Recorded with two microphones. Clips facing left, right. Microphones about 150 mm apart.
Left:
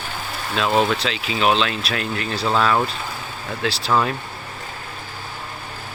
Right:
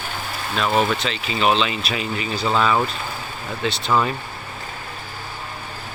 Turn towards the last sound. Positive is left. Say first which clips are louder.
# even
turn(degrees=0)  # may be behind; listen again after turning